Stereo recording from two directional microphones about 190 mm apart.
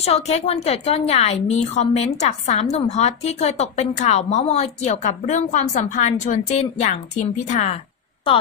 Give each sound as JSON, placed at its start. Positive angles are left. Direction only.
{"t": 0.0, "sound": "a woman's voice", "side_deg": 35}